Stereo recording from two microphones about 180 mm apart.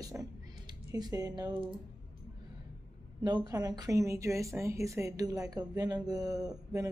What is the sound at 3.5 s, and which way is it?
Speech, 20° right (ahead or behind).